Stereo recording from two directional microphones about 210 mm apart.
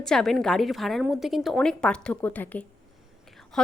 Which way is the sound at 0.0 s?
Centre (ahead or behind).